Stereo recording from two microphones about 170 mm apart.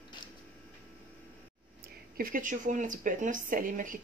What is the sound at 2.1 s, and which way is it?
Speech, 55° right (ahead or behind).